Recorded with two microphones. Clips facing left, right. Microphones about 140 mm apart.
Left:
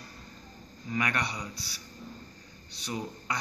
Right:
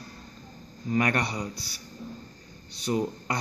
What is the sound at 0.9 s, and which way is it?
Speech, 45° right (ahead or behind).